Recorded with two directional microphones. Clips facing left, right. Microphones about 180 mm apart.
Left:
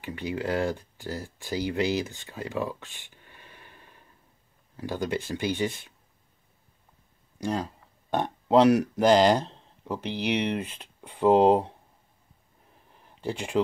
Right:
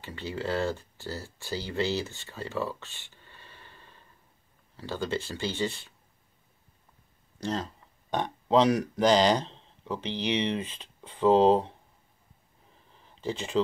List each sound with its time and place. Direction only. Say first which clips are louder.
0.0 s speech: left 3 dB; 15° left (ahead or behind)
7.3 s speech: left 2 dB; 10° left (ahead or behind)
13.2 s speech: left 1 dB; 10° left (ahead or behind)